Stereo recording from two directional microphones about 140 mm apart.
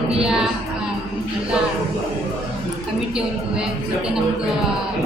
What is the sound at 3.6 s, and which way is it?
Speech, 5° right (ahead or behind).